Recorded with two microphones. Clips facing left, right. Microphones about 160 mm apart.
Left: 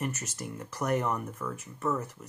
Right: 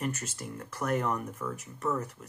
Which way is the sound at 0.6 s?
10° left (ahead or behind).